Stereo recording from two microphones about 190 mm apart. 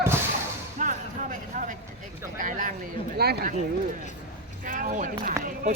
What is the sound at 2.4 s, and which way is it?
Speech, 45° right (ahead or behind).